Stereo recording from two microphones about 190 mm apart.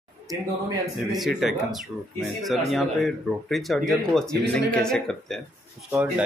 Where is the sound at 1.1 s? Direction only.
Centre (ahead or behind).